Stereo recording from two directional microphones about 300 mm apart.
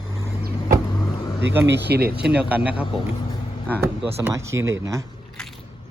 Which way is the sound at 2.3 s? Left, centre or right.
Centre.